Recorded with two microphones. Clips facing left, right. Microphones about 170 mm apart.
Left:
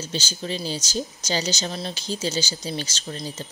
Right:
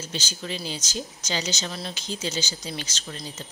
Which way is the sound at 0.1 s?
30° left (ahead or behind).